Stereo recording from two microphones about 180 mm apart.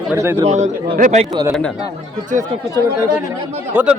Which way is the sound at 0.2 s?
15° right (ahead or behind).